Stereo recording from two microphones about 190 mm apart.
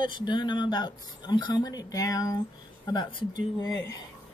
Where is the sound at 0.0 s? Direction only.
25° left (ahead or behind).